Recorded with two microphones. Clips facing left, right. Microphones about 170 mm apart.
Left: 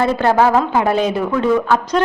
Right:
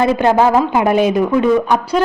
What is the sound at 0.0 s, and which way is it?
Speech, 15° right (ahead or behind).